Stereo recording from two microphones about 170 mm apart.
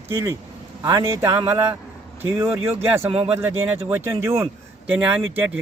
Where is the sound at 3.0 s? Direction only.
35° right (ahead or behind).